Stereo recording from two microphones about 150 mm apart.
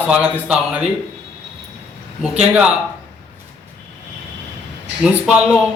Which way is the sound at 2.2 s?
10° right (ahead or behind).